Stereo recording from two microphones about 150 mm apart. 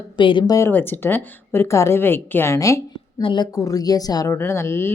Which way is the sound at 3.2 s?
30° left (ahead or behind).